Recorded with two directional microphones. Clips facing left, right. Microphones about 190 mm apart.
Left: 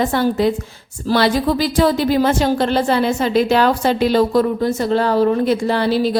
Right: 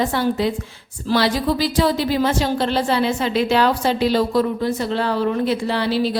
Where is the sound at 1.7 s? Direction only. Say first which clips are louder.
Left 6 dB; 50° left (ahead or behind).